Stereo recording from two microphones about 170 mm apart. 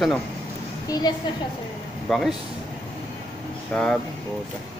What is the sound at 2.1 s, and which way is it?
Speech, centre (ahead or behind).